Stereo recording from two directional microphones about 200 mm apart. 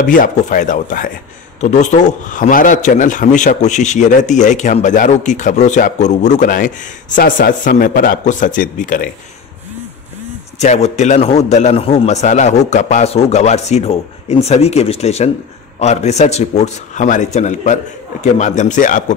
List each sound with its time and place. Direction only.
0.0 s a man's voice: 40° left (ahead or behind)
10.6 s a man's voice: 35° left (ahead or behind)